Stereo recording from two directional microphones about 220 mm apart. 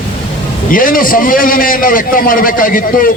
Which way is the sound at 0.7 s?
40° left (ahead or behind).